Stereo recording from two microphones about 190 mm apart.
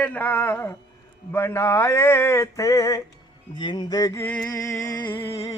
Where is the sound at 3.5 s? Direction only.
25° left (ahead or behind).